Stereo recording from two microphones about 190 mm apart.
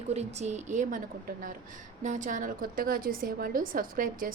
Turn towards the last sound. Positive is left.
turn(degrees=-45)  # may be behind; listen again after turning